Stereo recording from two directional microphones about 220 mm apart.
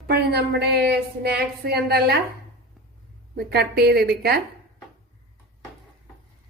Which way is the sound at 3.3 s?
45° right (ahead or behind).